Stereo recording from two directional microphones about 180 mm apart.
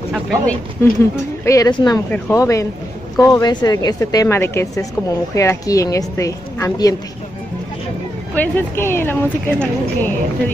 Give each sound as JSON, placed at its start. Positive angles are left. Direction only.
{"t": 0.1, "sound": "speech", "side_deg": 0}
{"t": 0.8, "sound": "speech", "side_deg": 15}
{"t": 2.0, "sound": "speech", "side_deg": 10}
{"t": 8.4, "sound": "speech", "side_deg": 10}